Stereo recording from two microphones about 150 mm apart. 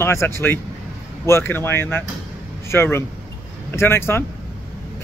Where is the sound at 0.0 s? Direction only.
20° left (ahead or behind).